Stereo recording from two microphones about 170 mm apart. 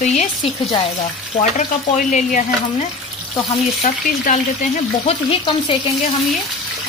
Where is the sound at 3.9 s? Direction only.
50° left (ahead or behind).